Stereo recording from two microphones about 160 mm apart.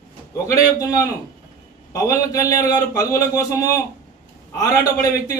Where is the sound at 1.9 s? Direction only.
20° left (ahead or behind).